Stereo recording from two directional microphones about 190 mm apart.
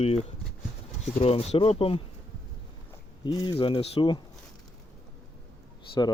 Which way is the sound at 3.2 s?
25° left (ahead or behind).